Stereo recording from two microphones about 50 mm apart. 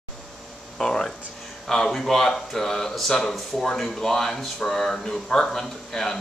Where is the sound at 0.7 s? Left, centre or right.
Centre.